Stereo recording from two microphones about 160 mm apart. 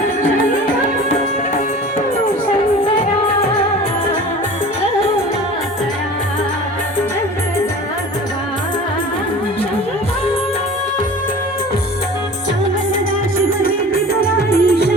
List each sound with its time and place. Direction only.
13.6 s music: 70° left (ahead or behind)